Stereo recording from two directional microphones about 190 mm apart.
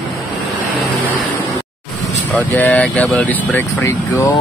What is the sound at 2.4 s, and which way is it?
Speech, 10° left (ahead or behind).